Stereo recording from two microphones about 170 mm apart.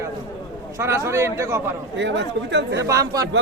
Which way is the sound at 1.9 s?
90° right.